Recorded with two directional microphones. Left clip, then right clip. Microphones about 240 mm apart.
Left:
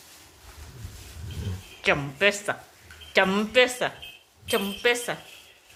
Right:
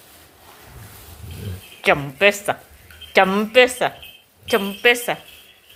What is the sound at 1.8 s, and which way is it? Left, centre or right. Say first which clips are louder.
A woman's voice: right 6 dB; centre.